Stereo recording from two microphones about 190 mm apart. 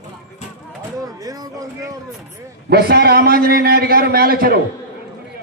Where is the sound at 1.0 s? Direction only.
20° right (ahead or behind).